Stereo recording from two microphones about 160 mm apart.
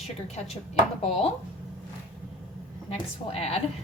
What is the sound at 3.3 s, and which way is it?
Speech, 40° left (ahead or behind).